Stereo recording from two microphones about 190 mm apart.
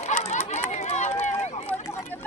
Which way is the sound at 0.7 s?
40° left (ahead or behind).